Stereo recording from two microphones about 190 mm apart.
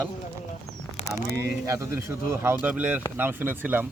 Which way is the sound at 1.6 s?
15° right (ahead or behind).